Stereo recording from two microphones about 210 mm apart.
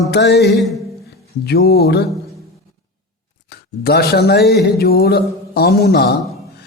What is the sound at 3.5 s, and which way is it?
Speech, 50° left (ahead or behind).